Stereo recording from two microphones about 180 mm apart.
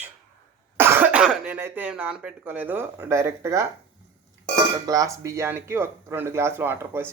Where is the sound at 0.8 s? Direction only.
10° right (ahead or behind).